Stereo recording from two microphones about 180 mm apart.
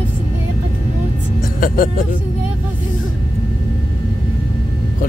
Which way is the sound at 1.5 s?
50° left (ahead or behind).